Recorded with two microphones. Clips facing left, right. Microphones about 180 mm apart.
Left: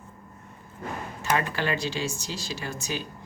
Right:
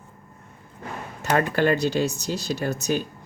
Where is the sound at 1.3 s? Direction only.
50° right (ahead or behind).